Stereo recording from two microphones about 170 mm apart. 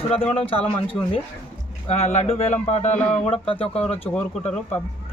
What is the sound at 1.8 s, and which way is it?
Speech, 40° left (ahead or behind).